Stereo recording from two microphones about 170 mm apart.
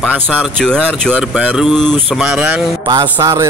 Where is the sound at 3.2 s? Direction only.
25° right (ahead or behind).